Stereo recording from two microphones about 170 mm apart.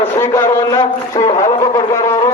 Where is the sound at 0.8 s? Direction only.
30° left (ahead or behind).